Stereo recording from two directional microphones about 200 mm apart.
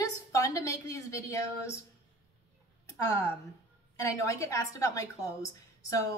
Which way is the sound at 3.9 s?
15° left (ahead or behind).